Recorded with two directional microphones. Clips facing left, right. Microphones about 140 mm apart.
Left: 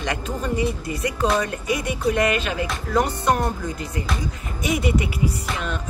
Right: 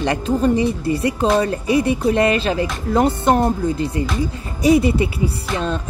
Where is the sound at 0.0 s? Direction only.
30° right (ahead or behind).